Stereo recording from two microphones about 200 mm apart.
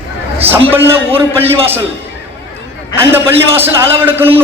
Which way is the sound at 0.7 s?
10° right (ahead or behind).